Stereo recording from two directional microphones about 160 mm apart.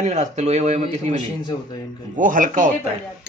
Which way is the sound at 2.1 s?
55° right (ahead or behind).